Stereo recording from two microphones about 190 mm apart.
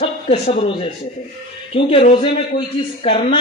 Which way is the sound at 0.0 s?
35° left (ahead or behind).